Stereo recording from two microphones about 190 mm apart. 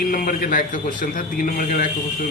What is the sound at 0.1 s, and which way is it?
Speech, 45° left (ahead or behind).